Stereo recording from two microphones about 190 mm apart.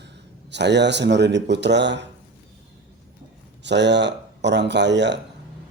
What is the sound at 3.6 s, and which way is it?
Speech, 65° right (ahead or behind).